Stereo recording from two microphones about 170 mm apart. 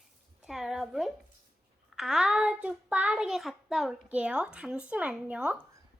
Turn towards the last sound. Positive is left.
turn(degrees=-10)  # may be behind; listen again after turning